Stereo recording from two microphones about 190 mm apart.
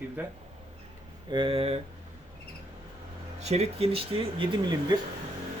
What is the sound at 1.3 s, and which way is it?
Speech, 30° right (ahead or behind).